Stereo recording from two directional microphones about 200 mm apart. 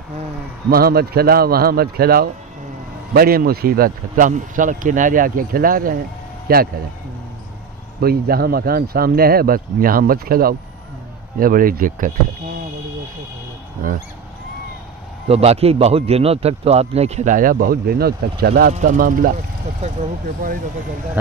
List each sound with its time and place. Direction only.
0.7 s speech: 50° right (ahead or behind)
8.0 s speech: 50° right (ahead or behind)
15.2 s a man's voice: 30° right (ahead or behind); by 18.7 s 50° right (ahead or behind)
18.7 s a man's voice: 40° right (ahead or behind)